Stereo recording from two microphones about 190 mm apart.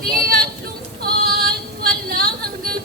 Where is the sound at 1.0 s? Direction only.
55° right (ahead or behind).